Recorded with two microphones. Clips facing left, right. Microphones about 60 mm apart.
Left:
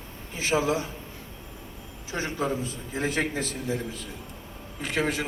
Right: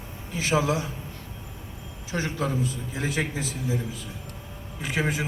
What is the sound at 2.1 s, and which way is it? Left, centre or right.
A man's voice, left.